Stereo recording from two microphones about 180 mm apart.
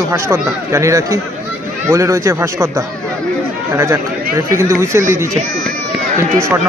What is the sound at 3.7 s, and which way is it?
Speech, 15° right (ahead or behind).